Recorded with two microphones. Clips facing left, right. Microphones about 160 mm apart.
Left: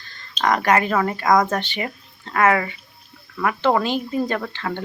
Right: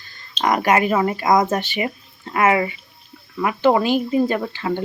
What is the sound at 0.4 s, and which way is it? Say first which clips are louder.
Speech: right 1 dB; 10° right (ahead or behind).